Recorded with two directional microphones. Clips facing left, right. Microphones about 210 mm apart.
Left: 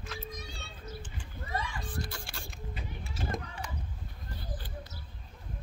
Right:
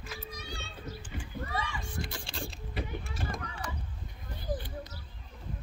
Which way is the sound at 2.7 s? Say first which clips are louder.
Right 9 dB; 55° right (ahead or behind).